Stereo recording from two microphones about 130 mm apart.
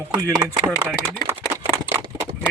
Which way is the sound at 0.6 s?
15° right (ahead or behind).